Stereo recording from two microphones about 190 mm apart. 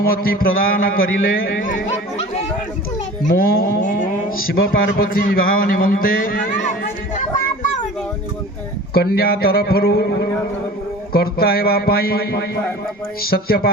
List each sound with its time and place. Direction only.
0.0 s a man's voice: 50° left (ahead or behind)
3.3 s a man's voice: 50° left (ahead or behind)
8.9 s a man's voice: 55° left (ahead or behind)